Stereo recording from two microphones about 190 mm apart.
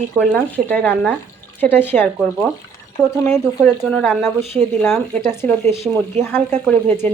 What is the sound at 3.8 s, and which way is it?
Speech, 5° left (ahead or behind).